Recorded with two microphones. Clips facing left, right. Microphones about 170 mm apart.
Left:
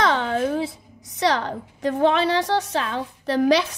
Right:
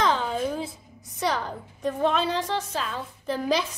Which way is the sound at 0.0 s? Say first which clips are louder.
Left 4 dB; 75° left (ahead or behind).